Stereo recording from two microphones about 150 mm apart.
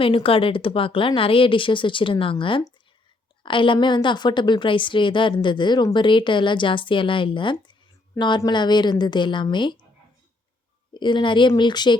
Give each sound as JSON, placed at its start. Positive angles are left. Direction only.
{"t": 0.0, "sound": "a woman's voice", "side_deg": 35}
{"t": 10.9, "sound": "a woman's voice", "side_deg": 30}